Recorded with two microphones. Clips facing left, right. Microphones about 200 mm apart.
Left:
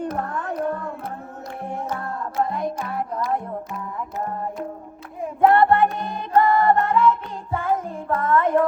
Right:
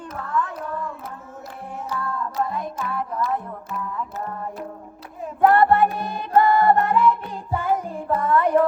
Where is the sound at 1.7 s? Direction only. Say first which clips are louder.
Right 1 dB; 50° left (ahead or behind).